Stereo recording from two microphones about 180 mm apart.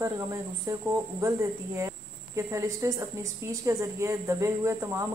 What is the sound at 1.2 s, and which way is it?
Speech, 15° right (ahead or behind).